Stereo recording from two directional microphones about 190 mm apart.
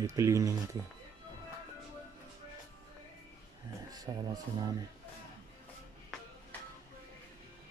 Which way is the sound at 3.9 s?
20° right (ahead or behind).